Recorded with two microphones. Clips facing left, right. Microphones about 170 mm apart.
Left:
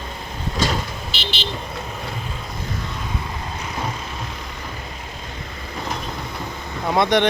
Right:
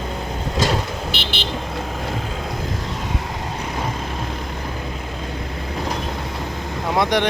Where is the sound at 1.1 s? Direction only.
55° right (ahead or behind).